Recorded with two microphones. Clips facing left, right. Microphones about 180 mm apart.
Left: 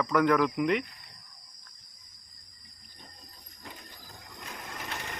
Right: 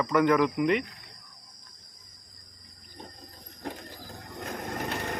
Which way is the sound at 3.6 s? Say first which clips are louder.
Right 10 dB; 70° right (ahead or behind).